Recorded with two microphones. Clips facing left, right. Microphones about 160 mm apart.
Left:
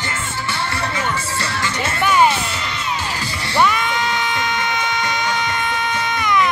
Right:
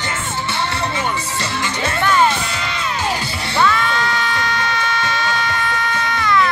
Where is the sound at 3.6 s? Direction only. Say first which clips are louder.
Right 2 dB; 15° left (ahead or behind).